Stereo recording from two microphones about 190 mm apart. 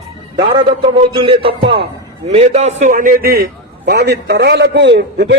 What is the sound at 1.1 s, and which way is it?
A man's voice, 30° right (ahead or behind).